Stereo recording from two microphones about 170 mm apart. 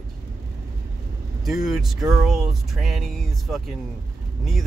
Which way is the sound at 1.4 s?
Centre (ahead or behind).